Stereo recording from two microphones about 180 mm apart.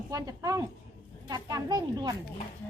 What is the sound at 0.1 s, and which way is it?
Speech, 20° right (ahead or behind).